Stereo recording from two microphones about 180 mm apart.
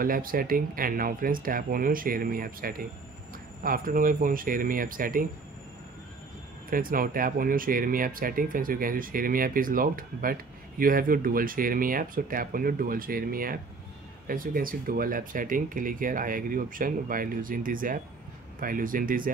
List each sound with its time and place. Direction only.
0.0 s speech: 50° right (ahead or behind)
6.7 s speech: 50° right (ahead or behind)